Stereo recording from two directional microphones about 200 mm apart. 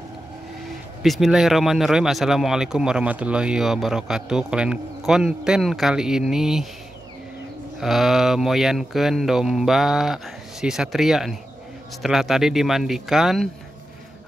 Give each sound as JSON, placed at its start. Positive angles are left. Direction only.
{"t": 1.0, "sound": "speech", "side_deg": 0}
{"t": 7.8, "sound": "speech", "side_deg": 0}